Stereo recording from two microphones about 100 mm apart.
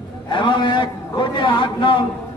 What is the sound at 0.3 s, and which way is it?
A man's voice, 55° left (ahead or behind).